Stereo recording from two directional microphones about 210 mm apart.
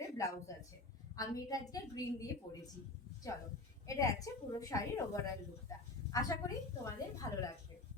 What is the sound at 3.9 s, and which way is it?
A woman's voice, 15° left (ahead or behind).